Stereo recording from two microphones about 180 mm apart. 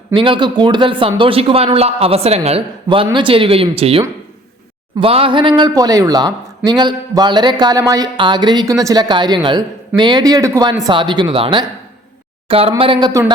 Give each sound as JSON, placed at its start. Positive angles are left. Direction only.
{"t": 0.1, "sound": "a man's voice", "side_deg": -25}